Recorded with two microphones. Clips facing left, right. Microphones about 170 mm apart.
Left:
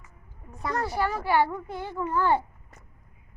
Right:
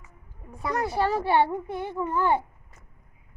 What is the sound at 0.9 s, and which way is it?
A child's voice, 30° right (ahead or behind).